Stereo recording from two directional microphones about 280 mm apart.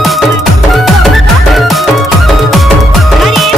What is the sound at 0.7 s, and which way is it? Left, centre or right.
Music, centre.